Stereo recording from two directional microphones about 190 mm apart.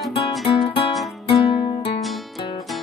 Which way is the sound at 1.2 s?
30° left (ahead or behind).